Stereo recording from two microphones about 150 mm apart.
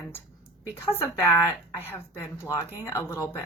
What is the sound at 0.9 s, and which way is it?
A woman's voice, 15° left (ahead or behind).